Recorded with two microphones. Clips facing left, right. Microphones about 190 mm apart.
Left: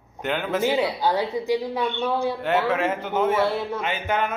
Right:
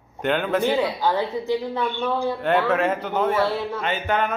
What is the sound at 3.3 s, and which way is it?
Speech, 20° left (ahead or behind).